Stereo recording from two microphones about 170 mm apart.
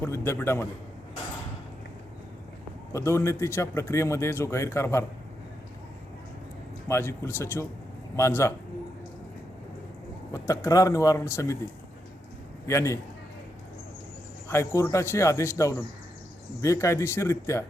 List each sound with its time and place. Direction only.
0.0 s a man's voice: 15° left (ahead or behind)
2.9 s a man's voice: 15° left (ahead or behind)
6.8 s a man's voice: 15° left (ahead or behind)
10.3 s speech: 15° left (ahead or behind)
12.6 s a man's voice: 15° left (ahead or behind)
14.4 s a man's voice: 15° left (ahead or behind)